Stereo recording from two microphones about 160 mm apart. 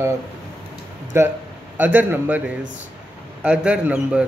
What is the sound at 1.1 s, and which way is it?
Speech, 15° right (ahead or behind).